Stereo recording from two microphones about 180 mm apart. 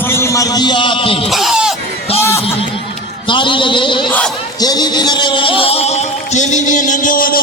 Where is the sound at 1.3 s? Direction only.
Centre (ahead or behind).